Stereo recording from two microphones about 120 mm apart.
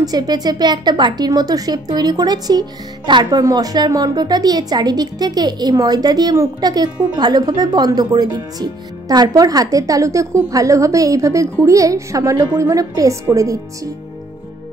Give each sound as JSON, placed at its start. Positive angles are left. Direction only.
{"t": 0.0, "sound": "a woman's voice", "side_deg": -35}